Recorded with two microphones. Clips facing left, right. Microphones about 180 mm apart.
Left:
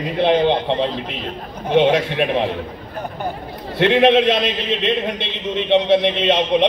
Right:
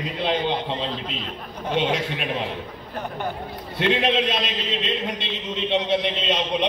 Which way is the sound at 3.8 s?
60° left (ahead or behind).